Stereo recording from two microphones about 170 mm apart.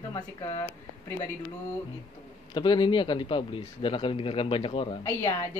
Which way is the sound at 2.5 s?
25° left (ahead or behind).